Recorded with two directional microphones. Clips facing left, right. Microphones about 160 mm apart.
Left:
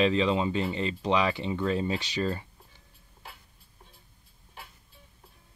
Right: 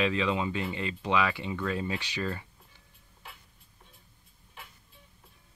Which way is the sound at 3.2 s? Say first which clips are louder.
Left 2 dB; 35° left (ahead or behind).